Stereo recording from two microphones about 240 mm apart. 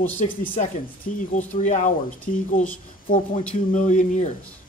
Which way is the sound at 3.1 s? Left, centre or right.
Left.